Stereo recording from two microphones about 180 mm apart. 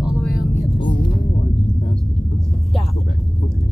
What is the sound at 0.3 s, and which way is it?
Vehicle, 50° left (ahead or behind).